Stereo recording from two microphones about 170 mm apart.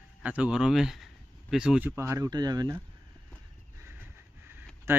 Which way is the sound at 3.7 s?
15° right (ahead or behind).